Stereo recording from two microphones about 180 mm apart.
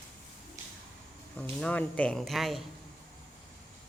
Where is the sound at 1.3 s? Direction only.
10° left (ahead or behind).